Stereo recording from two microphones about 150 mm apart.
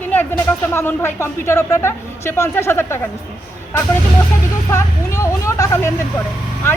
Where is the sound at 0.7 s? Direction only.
15° left (ahead or behind).